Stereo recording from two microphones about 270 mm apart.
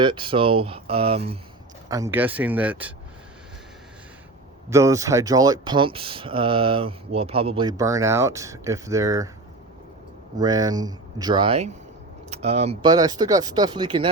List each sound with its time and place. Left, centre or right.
0.0 s speech: centre
1.9 s speech: centre
4.7 s speech: centre
10.3 s speech: centre